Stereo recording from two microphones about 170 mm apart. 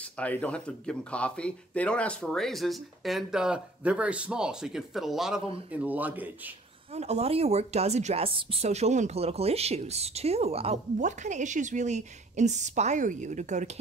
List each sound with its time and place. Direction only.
0.0 s speech: 10° left (ahead or behind); by 6.5 s 10° right (ahead or behind)
6.9 s speech: 40° right (ahead or behind)